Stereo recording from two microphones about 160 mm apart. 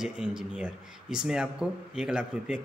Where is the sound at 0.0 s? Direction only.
5° right (ahead or behind).